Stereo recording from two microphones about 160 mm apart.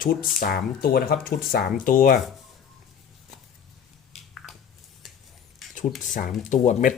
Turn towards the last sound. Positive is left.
turn(degrees=55)  # may be behind; listen again after turning